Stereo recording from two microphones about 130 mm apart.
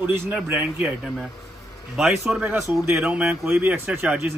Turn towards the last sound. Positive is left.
turn(degrees=-10)  # may be behind; listen again after turning